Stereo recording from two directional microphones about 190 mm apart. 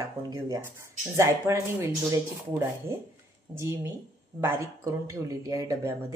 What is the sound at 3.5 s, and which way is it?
Speech, 15° right (ahead or behind).